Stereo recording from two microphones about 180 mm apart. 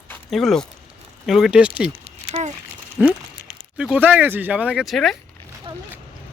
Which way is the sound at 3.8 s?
5° right (ahead or behind).